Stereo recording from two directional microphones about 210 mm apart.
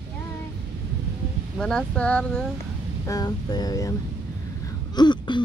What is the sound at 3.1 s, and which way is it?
Speech, 20° left (ahead or behind).